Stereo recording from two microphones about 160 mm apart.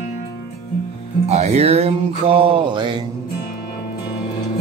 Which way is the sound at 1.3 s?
45° right (ahead or behind).